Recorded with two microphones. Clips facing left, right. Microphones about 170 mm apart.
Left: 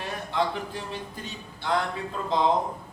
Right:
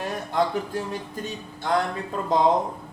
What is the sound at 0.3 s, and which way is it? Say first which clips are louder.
Speech: right 3 dB; 45° right (ahead or behind).